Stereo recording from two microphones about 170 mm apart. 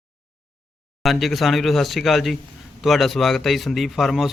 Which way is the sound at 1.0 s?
Centre (ahead or behind).